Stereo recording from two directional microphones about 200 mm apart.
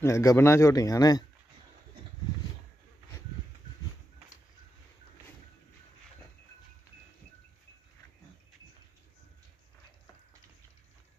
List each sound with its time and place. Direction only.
0.0 s speech: 15° left (ahead or behind)